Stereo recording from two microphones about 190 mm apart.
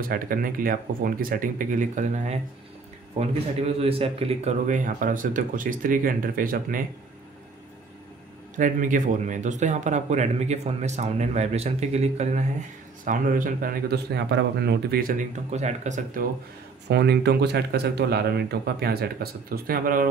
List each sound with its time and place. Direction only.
0.0 s a man's voice: 50° right (ahead or behind)
8.5 s a man's voice: 45° right (ahead or behind)
16.9 s speech: 60° right (ahead or behind)